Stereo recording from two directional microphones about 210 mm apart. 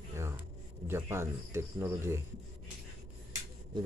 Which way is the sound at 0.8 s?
10° right (ahead or behind).